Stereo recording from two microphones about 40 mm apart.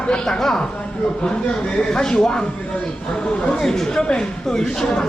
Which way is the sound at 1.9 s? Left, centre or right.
Centre.